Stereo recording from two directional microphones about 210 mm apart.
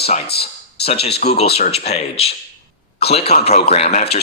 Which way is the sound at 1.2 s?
30° left (ahead or behind).